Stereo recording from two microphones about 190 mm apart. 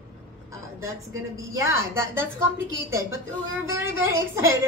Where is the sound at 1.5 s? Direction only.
15° right (ahead or behind).